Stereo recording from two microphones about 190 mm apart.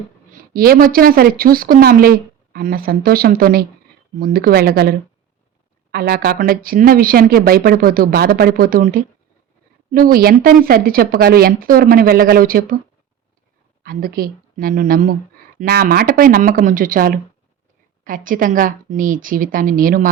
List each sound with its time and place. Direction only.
0.5 s speech: 50° right (ahead or behind)
13.8 s speech: 50° right (ahead or behind)